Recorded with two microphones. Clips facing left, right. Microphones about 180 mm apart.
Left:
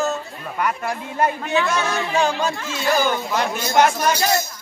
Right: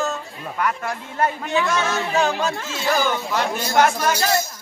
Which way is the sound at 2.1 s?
Centre (ahead or behind).